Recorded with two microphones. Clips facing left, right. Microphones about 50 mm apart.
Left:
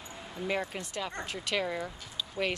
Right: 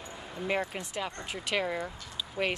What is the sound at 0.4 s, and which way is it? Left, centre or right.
Speech, centre.